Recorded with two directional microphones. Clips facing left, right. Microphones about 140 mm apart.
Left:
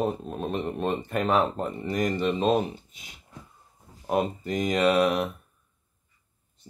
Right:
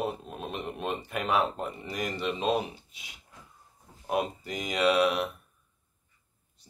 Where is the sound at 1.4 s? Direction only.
40° left (ahead or behind).